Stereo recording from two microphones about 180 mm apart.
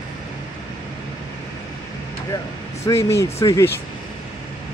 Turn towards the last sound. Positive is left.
turn(degrees=15)  # may be behind; listen again after turning